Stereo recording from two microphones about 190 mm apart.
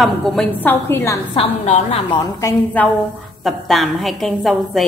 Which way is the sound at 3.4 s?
Centre (ahead or behind).